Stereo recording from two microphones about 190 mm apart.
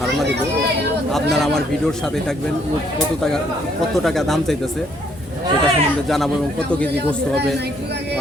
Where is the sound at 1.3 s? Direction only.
Centre (ahead or behind).